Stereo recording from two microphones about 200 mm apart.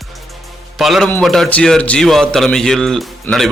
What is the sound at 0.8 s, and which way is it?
A man's voice, centre (ahead or behind).